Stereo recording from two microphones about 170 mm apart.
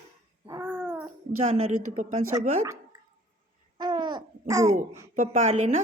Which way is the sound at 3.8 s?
25° right (ahead or behind).